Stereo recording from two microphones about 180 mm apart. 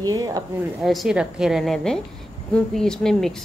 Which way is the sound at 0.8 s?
Centre (ahead or behind).